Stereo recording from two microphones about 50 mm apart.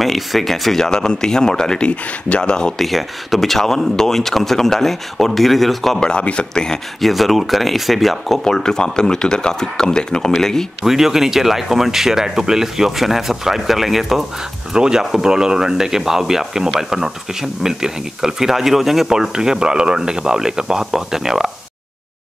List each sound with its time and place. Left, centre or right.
0.0 s speech: centre
2.8 s speech: centre
5.9 s speech: centre
7.0 s speech: centre
8.5 s speech: centre
10.8 s speech: centre